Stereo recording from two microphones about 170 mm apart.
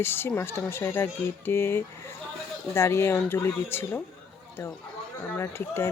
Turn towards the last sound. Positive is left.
turn(degrees=15)  # may be behind; listen again after turning